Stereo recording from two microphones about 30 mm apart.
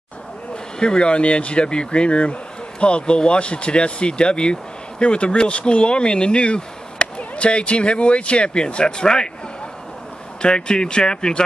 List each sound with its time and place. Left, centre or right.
0.7 s speech: left
10.4 s speech: left